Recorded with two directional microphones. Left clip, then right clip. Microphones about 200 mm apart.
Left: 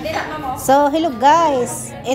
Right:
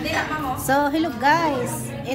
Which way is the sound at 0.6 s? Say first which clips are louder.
Left 7 dB; 20° left (ahead or behind).